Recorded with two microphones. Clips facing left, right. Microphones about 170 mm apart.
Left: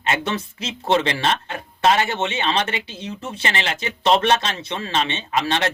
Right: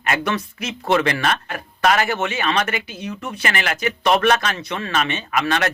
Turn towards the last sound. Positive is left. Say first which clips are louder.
# right 1 dB
turn(degrees=25)  # may be behind; listen again after turning